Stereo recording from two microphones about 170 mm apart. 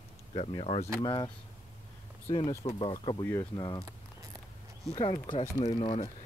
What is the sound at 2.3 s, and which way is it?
Speech, 35° left (ahead or behind).